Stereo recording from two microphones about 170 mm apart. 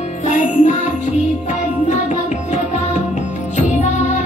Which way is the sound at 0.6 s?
45° left (ahead or behind).